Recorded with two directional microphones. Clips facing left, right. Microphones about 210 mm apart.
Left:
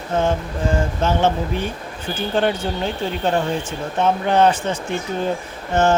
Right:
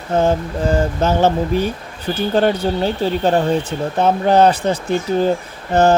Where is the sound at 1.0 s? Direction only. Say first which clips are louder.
Right 3 dB; 40° right (ahead or behind).